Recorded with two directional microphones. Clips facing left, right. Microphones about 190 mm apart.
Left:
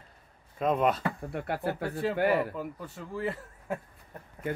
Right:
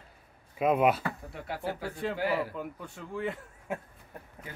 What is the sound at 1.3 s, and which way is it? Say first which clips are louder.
Speech: left 4 dB; 60° left (ahead or behind).